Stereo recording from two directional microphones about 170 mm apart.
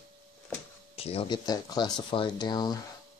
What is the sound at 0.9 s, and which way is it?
Speech, 35° left (ahead or behind).